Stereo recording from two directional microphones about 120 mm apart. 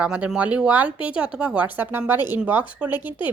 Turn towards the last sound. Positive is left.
turn(degrees=-15)  # may be behind; listen again after turning